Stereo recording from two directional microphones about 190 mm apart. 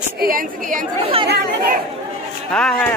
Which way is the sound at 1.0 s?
30° right (ahead or behind).